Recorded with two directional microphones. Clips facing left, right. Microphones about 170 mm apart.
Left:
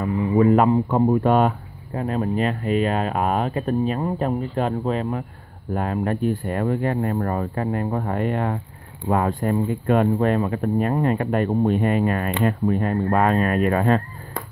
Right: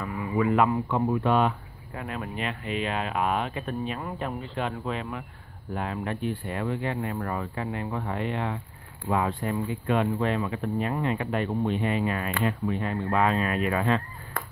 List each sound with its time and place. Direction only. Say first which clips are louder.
0.4 s speech: left 6 dB; 40° left (ahead or behind)